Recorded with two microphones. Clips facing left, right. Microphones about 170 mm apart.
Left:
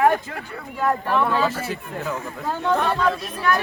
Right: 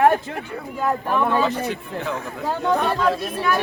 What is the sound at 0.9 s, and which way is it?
Speech, 15° right (ahead or behind).